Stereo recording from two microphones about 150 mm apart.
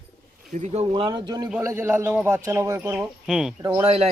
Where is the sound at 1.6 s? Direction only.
15° right (ahead or behind).